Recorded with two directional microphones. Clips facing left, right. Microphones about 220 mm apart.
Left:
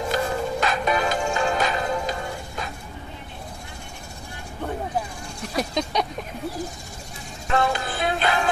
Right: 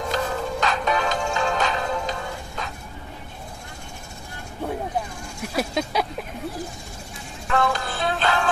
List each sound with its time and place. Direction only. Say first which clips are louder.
0.1 s music: left 1 dB; 10° left (ahead or behind)
5.5 s a sound: even; 5° right (ahead or behind)
7.4 s music: even; 20° left (ahead or behind)